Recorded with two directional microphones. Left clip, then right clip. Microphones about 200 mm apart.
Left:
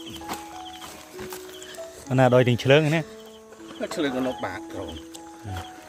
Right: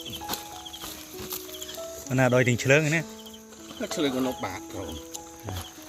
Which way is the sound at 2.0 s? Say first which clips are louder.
Left 4 dB; 15° left (ahead or behind).